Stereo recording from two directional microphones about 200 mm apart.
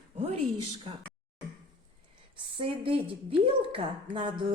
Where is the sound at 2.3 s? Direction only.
25° right (ahead or behind).